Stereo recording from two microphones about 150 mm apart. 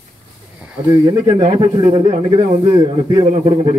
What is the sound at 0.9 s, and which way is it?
Speech, 25° right (ahead or behind).